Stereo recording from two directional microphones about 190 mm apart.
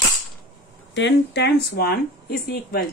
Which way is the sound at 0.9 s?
65° left (ahead or behind).